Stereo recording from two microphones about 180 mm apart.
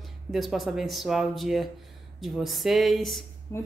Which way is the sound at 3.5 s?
15° left (ahead or behind).